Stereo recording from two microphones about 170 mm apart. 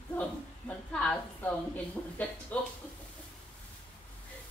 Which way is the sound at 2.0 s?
10° left (ahead or behind).